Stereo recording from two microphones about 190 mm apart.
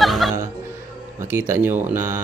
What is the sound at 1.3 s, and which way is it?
Speech, 10° right (ahead or behind).